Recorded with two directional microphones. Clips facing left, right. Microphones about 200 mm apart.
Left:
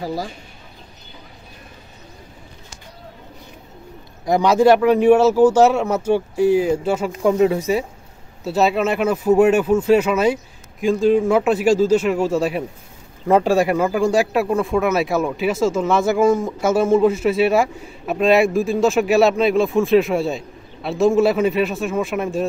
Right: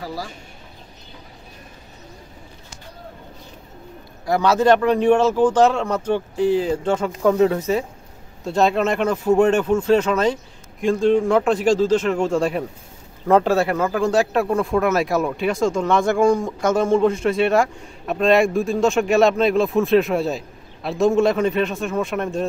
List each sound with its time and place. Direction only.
0.0 s speech: 20° left (ahead or behind)
4.3 s speech: 15° left (ahead or behind)